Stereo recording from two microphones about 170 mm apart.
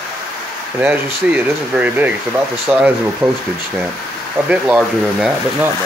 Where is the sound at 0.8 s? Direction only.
10° right (ahead or behind).